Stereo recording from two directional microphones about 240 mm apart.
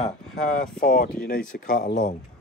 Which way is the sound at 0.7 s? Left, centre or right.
Left.